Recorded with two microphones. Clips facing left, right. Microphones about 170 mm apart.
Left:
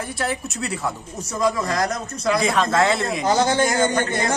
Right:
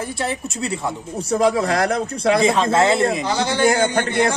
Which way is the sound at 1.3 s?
65° right (ahead or behind).